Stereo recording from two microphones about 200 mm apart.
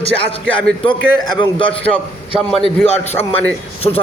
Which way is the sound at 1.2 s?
20° left (ahead or behind).